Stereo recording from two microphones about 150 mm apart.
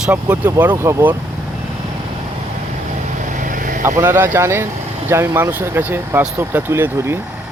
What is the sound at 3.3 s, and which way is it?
Vehicle, 60° right (ahead or behind).